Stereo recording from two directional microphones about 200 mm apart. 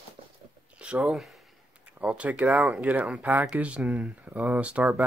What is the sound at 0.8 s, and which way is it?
Speech, 5° right (ahead or behind).